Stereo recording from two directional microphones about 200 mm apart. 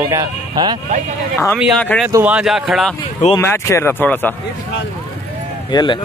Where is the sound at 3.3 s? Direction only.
15° left (ahead or behind).